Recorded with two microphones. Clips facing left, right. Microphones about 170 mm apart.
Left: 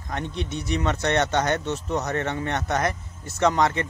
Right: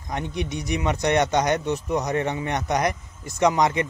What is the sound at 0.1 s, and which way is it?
Speech, 15° right (ahead or behind).